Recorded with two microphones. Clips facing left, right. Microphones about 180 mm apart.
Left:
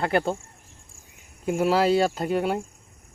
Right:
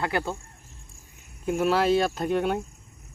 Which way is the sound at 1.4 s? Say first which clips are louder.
Left 1 dB; 10° left (ahead or behind).